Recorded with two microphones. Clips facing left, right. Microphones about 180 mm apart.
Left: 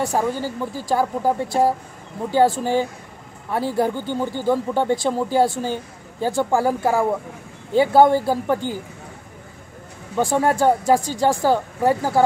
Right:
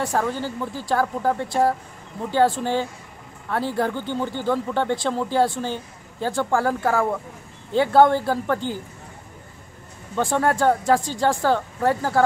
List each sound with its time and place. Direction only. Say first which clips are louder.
0.0 s speech: left 2 dB; 20° left (ahead or behind)
0.3 s speech: left 2 dB; 10° left (ahead or behind)
10.1 s speech: left 2 dB; 10° left (ahead or behind)